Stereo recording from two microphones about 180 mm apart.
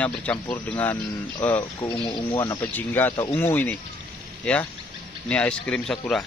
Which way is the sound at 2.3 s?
15° left (ahead or behind).